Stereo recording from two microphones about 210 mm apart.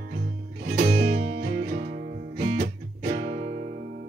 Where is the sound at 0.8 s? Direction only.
50° right (ahead or behind).